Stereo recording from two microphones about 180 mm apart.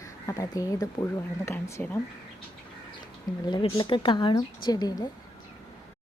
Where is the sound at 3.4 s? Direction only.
25° left (ahead or behind).